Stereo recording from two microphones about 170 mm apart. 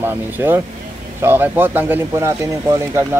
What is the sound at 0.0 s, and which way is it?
Speech, 10° right (ahead or behind).